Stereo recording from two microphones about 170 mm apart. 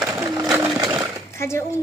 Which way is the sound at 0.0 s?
20° right (ahead or behind).